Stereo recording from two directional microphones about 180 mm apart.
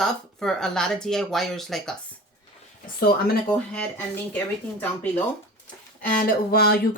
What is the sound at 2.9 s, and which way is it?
Speech, 55° left (ahead or behind).